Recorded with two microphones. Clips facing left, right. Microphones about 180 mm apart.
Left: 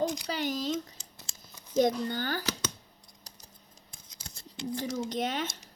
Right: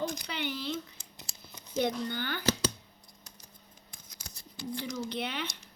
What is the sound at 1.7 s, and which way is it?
Speech, 40° left (ahead or behind).